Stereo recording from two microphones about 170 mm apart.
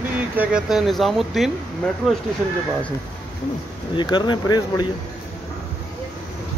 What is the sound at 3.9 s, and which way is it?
Speech, 25° left (ahead or behind).